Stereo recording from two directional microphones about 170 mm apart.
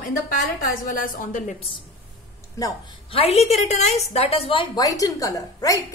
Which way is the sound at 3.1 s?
35° left (ahead or behind).